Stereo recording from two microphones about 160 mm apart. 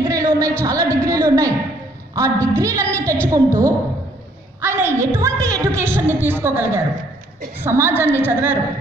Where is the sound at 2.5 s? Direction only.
20° right (ahead or behind).